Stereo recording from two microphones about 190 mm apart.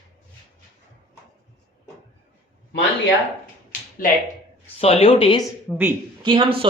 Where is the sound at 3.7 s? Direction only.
45° left (ahead or behind).